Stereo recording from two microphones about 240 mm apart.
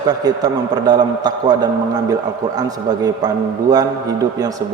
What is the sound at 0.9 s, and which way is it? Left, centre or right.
Speech, centre.